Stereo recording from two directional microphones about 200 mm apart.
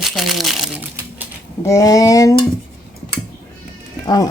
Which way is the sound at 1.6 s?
15° left (ahead or behind).